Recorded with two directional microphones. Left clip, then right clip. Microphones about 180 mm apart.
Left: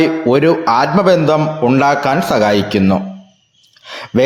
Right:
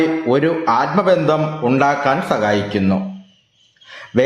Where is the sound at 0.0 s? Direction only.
35° left (ahead or behind).